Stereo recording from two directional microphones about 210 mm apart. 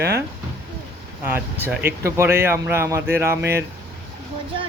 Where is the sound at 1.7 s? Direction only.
10° right (ahead or behind).